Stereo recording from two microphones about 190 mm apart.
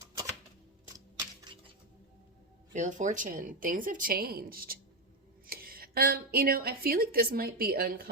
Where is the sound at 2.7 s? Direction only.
40° right (ahead or behind).